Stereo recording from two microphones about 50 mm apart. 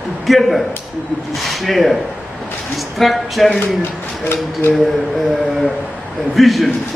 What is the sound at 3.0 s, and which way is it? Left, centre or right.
Speech, centre.